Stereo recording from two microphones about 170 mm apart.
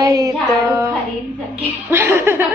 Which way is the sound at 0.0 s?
20° right (ahead or behind).